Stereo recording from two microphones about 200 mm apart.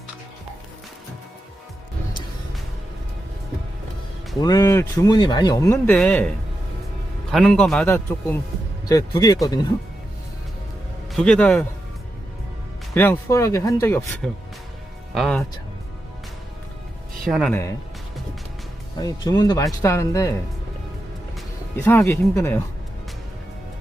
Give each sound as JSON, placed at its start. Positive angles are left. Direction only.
{"t": 4.4, "sound": "speech", "side_deg": 20}
{"t": 11.1, "sound": "speech", "side_deg": 5}
{"t": 12.9, "sound": "speech", "side_deg": 10}
{"t": 17.2, "sound": "speech", "side_deg": 0}
{"t": 18.9, "sound": "speech", "side_deg": 20}
{"t": 21.8, "sound": "speech", "side_deg": 10}